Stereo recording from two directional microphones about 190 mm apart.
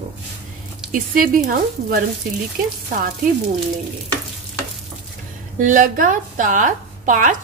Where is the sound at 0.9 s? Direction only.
45° right (ahead or behind).